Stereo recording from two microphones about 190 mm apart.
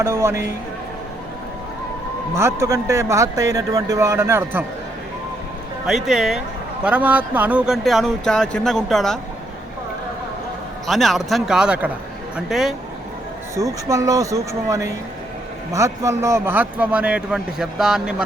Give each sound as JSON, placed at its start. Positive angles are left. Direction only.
{"t": 0.0, "sound": "a man's voice", "side_deg": -15}
{"t": 2.3, "sound": "a man's voice", "side_deg": -15}
{"t": 5.8, "sound": "speech", "side_deg": 0}
{"t": 10.8, "sound": "speech", "side_deg": 0}
{"t": 13.6, "sound": "a man's voice", "side_deg": -15}